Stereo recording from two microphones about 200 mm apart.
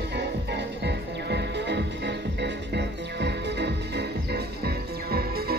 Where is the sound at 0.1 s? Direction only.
55° right (ahead or behind).